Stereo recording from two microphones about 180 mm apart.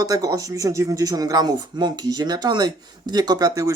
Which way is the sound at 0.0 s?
20° right (ahead or behind).